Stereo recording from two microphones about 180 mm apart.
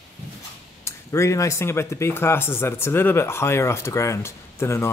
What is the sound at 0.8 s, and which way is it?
Speech, 15° left (ahead or behind).